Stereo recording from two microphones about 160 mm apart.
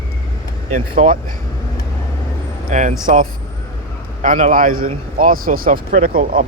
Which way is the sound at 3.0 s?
60° right (ahead or behind).